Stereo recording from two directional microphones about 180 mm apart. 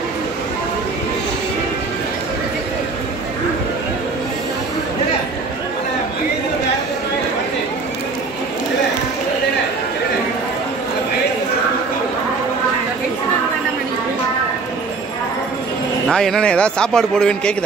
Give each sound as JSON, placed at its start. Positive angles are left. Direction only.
{"t": 16.1, "sound": "a man's voice", "side_deg": 5}